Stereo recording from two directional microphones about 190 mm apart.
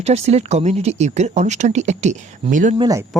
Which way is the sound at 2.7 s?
20° right (ahead or behind).